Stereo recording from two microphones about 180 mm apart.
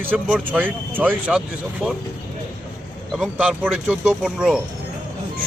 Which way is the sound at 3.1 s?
5° right (ahead or behind).